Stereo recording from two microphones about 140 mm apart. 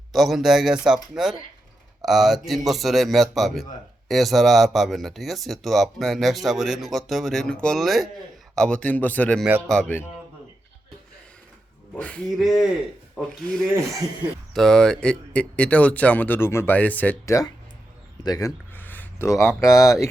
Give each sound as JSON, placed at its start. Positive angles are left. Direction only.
{"t": 0.1, "sound": "speech", "side_deg": 0}
{"t": 11.9, "sound": "speech", "side_deg": 10}
{"t": 18.2, "sound": "a man's voice", "side_deg": 25}
{"t": 18.7, "sound": "a sound", "side_deg": 15}
{"t": 19.5, "sound": "speech", "side_deg": 0}
{"t": 19.7, "sound": "speech", "side_deg": 20}